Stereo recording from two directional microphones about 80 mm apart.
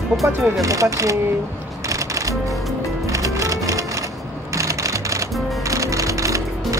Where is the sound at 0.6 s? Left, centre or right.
Right.